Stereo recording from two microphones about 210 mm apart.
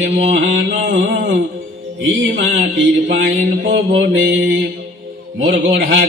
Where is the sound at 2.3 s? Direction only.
60° right (ahead or behind).